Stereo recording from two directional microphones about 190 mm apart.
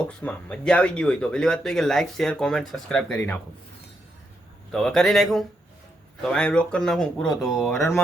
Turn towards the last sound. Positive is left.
turn(degrees=0)  # may be behind; listen again after turning